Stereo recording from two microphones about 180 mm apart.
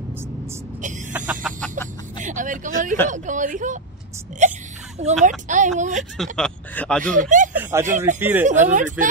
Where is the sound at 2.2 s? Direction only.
45° right (ahead or behind).